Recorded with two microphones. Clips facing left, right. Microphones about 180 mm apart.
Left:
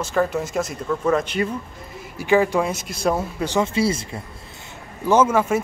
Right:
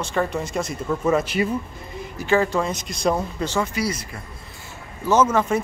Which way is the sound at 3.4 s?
20° left (ahead or behind).